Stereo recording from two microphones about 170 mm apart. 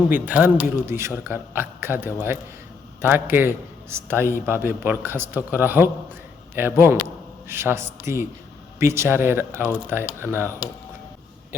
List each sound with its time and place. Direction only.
0.1 s a man's voice: 10° right (ahead or behind)